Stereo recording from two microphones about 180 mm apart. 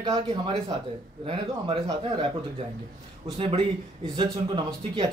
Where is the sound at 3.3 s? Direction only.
30° right (ahead or behind).